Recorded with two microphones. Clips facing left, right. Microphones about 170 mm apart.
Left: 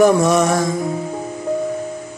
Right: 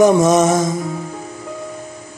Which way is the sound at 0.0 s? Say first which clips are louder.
Right 2 dB; 20° right (ahead or behind).